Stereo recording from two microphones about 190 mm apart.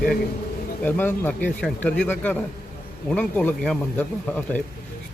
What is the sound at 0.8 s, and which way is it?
A man's voice, 10° left (ahead or behind).